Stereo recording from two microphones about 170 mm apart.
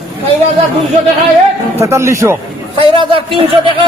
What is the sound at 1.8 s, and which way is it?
Speech, 15° right (ahead or behind).